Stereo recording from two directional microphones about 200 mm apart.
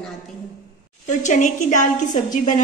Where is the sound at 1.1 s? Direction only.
40° left (ahead or behind).